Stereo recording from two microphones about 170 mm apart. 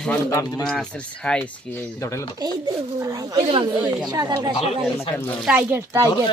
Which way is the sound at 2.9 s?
20° right (ahead or behind).